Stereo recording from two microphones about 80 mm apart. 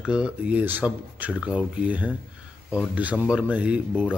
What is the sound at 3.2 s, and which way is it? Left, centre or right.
Speech, centre.